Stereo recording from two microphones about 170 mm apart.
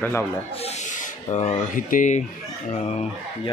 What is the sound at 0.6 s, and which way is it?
Speech, 40° left (ahead or behind).